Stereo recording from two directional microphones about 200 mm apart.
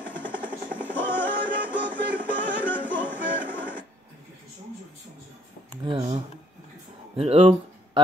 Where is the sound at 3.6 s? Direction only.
5° right (ahead or behind).